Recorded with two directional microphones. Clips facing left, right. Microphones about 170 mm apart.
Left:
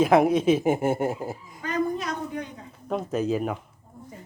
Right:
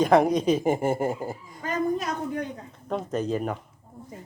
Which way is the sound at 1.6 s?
45° right (ahead or behind).